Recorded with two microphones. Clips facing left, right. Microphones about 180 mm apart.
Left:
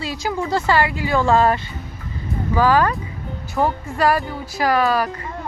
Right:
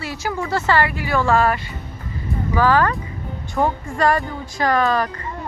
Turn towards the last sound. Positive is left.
turn(degrees=5)  # may be behind; listen again after turning